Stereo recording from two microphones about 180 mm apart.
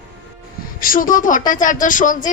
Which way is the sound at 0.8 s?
50° left (ahead or behind).